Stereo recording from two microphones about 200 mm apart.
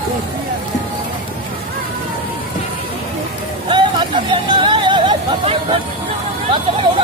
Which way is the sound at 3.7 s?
25° right (ahead or behind).